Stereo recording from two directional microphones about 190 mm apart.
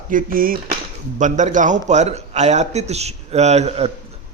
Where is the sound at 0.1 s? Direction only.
45° right (ahead or behind).